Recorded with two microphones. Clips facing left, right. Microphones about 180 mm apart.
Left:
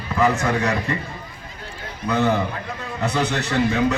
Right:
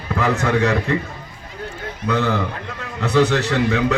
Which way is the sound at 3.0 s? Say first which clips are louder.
Right 6 dB; 65° right (ahead or behind).